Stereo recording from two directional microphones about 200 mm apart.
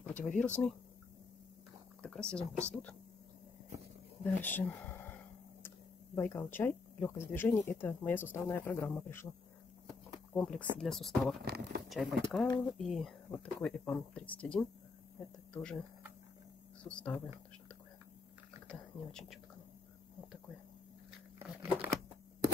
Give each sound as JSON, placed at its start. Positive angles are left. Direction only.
{"t": 0.0, "sound": "a sound", "side_deg": 5}
{"t": 0.4, "sound": "speech", "side_deg": 5}
{"t": 2.0, "sound": "speech", "side_deg": 5}
{"t": 4.2, "sound": "a sound", "side_deg": 10}
{"t": 6.1, "sound": "speech", "side_deg": 10}
{"t": 10.3, "sound": "speech", "side_deg": 5}
{"t": 11.4, "sound": "speech", "side_deg": -55}
{"t": 11.9, "sound": "speech", "side_deg": 0}
{"t": 16.8, "sound": "speech", "side_deg": 5}
{"t": 18.7, "sound": "speech", "side_deg": 0}